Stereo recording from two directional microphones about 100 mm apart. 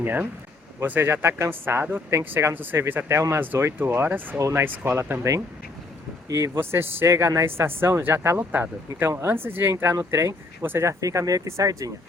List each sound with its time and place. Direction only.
0.0 s speech: 20° right (ahead or behind)
4.4 s speech: 35° right (ahead or behind)
4.6 s speech: 20° right (ahead or behind)
6.2 s speech: 30° right (ahead or behind)